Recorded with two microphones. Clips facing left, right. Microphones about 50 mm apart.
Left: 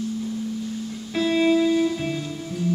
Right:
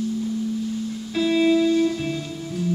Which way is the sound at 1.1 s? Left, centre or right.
Centre.